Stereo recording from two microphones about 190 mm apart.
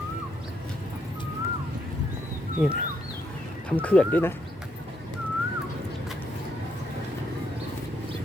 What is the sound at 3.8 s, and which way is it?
Speech, 5° left (ahead or behind).